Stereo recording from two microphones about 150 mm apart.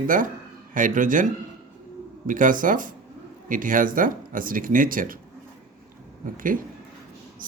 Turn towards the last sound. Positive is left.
turn(degrees=-70)  # may be behind; listen again after turning